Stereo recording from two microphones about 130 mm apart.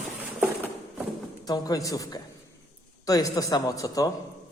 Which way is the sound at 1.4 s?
30° left (ahead or behind).